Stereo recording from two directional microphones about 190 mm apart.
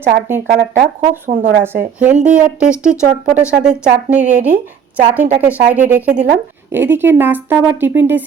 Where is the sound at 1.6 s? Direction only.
10° right (ahead or behind).